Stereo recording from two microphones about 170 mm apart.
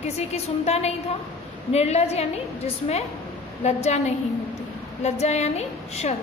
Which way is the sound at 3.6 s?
40° left (ahead or behind).